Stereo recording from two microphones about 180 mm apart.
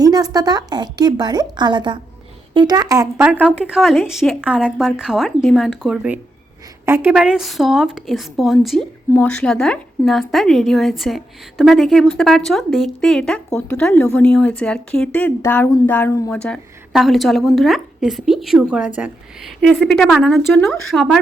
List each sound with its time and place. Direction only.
0.0 s a woman's voice: 20° right (ahead or behind)
3.2 s speech: 5° right (ahead or behind)